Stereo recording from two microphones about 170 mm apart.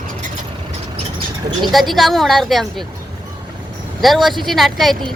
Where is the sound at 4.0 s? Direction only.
Centre (ahead or behind).